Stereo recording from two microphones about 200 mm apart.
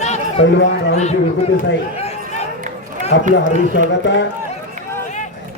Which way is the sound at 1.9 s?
30° left (ahead or behind).